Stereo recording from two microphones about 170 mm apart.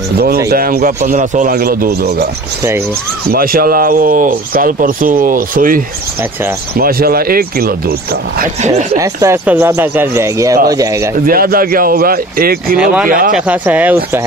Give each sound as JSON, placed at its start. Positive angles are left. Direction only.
{"t": 0.5, "sound": "speech", "side_deg": -60}
{"t": 1.1, "sound": "speech", "side_deg": -45}
{"t": 3.3, "sound": "speech", "side_deg": -60}
{"t": 6.8, "sound": "speech", "side_deg": -60}
{"t": 8.4, "sound": "speech", "side_deg": -45}
{"t": 8.9, "sound": "speech", "side_deg": -20}
{"t": 11.2, "sound": "speech", "side_deg": -60}
{"t": 12.7, "sound": "speech", "side_deg": -5}